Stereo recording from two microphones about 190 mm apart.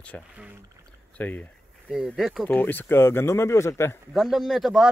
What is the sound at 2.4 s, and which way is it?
Speech, 10° left (ahead or behind).